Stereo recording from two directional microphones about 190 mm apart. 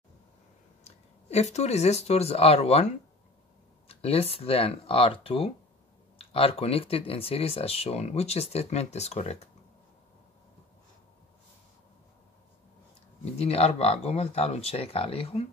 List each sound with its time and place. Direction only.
0.8 s speech: 35° left (ahead or behind)
13.2 s speech: 35° left (ahead or behind)